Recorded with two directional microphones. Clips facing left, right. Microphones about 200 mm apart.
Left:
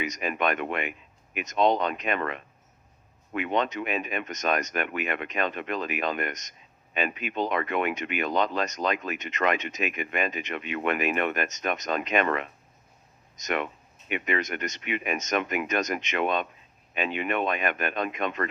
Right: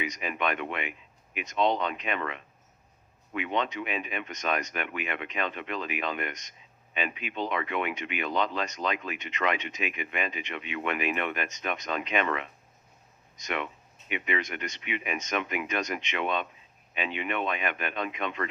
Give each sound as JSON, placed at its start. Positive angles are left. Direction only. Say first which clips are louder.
{"t": 0.0, "sound": "speech", "louder": "left 3 dB", "side_deg": 45}